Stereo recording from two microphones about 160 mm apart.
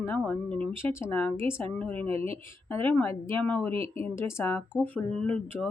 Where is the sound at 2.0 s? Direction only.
40° right (ahead or behind).